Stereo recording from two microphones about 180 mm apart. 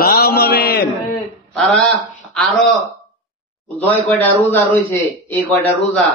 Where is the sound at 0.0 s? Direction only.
60° left (ahead or behind).